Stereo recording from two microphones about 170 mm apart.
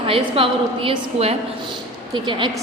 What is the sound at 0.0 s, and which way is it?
A woman's voice, 30° right (ahead or behind).